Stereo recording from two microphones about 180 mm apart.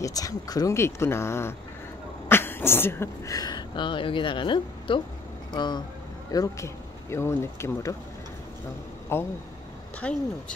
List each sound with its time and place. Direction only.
0.0 s speech: 20° left (ahead or behind)
9.1 s speech: 15° left (ahead or behind)